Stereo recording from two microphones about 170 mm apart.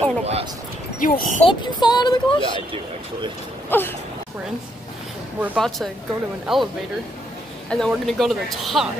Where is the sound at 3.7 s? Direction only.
10° left (ahead or behind).